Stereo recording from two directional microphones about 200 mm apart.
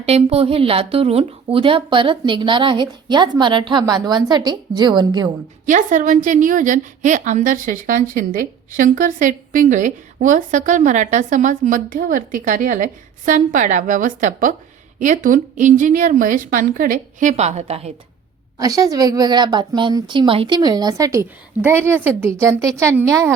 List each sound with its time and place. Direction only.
0.0 s speech: 30° right (ahead or behind)
5.6 s a woman's voice: 40° right (ahead or behind)
18.6 s a woman's voice: 15° right (ahead or behind)